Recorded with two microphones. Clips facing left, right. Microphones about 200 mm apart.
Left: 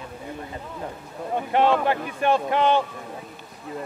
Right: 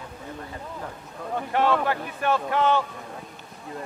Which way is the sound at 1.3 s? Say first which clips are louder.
Left 3 dB; 20° left (ahead or behind).